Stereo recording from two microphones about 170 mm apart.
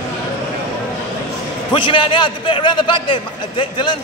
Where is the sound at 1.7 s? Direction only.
30° left (ahead or behind).